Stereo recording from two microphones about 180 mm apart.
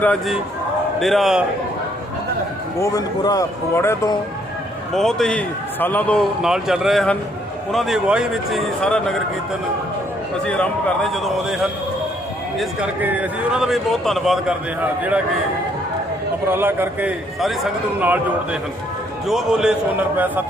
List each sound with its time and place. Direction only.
0.0 s a man's voice: 5° left (ahead or behind)
2.8 s speech: 20° left (ahead or behind)
4.9 s a man's voice: centre (ahead or behind)
6.4 s a man's voice: 5° right (ahead or behind)
10.4 s a man's voice: 5° left (ahead or behind)
16.5 s a man's voice: 10° right (ahead or behind)
19.3 s a man's voice: 5° right (ahead or behind)